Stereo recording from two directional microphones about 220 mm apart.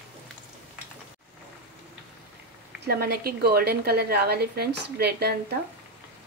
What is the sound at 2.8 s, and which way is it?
A woman's voice, 45° right (ahead or behind).